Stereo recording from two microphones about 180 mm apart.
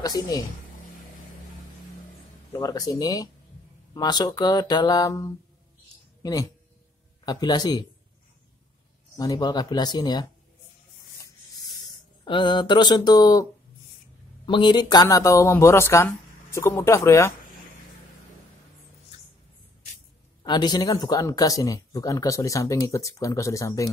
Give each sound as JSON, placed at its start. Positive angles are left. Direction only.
{"t": 0.0, "sound": "speech", "side_deg": 20}
{"t": 2.5, "sound": "speech", "side_deg": 20}
{"t": 9.1, "sound": "speech", "side_deg": 20}
{"t": 11.8, "sound": "speech", "side_deg": 25}
{"t": 20.4, "sound": "speech", "side_deg": 25}